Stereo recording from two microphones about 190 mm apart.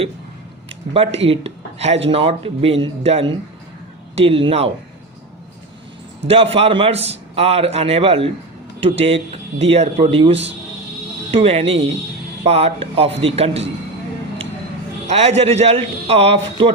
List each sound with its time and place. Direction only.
1.3 s a man's voice: 30° right (ahead or behind)
6.2 s a man's voice: 30° right (ahead or behind)
15.0 s a man's voice: 35° right (ahead or behind)